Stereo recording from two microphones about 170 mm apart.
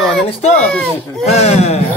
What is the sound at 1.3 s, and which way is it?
Speech, 40° left (ahead or behind).